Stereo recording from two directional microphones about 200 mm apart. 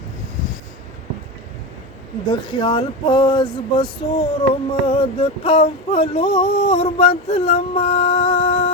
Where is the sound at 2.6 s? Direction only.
25° left (ahead or behind).